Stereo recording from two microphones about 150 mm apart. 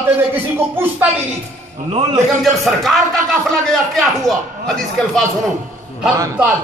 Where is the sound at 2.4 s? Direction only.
Centre (ahead or behind).